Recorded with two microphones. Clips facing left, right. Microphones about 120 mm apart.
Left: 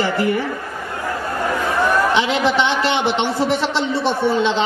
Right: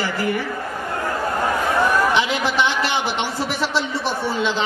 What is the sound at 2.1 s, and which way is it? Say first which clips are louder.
A man's voice: left 3 dB; 20° left (ahead or behind).